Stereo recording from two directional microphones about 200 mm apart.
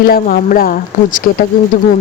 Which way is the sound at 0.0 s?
45° left (ahead or behind).